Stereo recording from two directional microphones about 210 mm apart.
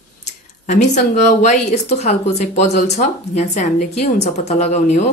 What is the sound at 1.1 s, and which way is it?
Speech, 35° left (ahead or behind).